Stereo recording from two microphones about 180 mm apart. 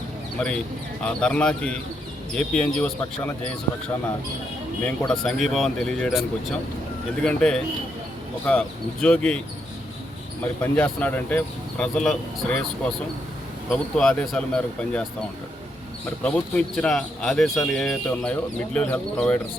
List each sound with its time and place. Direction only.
0.3 s speech: 5° left (ahead or behind)
5.0 s speech: centre (ahead or behind)
7.3 s speech: 5° left (ahead or behind)
10.4 s speech: 10° left (ahead or behind)
16.2 s speech: 5° left (ahead or behind)